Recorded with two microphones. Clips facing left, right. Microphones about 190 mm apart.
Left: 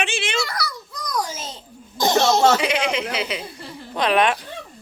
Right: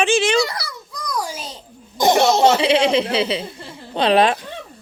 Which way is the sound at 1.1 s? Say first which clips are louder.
Even; 10° right (ahead or behind).